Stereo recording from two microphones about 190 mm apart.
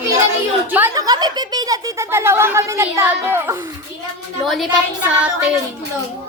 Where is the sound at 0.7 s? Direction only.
15° right (ahead or behind).